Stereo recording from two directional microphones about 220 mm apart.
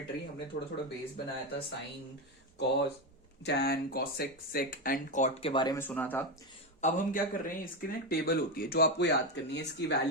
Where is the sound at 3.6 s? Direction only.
45° left (ahead or behind).